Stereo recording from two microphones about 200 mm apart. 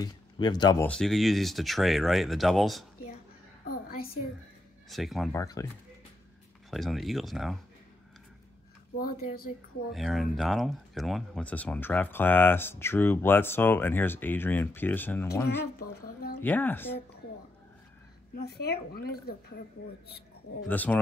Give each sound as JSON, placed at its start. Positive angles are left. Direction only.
{"t": 0.0, "sound": "speech", "side_deg": 20}
{"t": 0.8, "sound": "speech", "side_deg": 5}
{"t": 4.8, "sound": "speech", "side_deg": 0}
{"t": 5.3, "sound": "speech", "side_deg": 15}
{"t": 6.7, "sound": "speech", "side_deg": 0}
{"t": 8.9, "sound": "speech", "side_deg": 45}
{"t": 9.9, "sound": "speech", "side_deg": 0}
{"t": 15.8, "sound": "speech", "side_deg": 50}
{"t": 16.3, "sound": "speech", "side_deg": 10}
{"t": 18.4, "sound": "speech", "side_deg": 50}
{"t": 20.6, "sound": "speech", "side_deg": 10}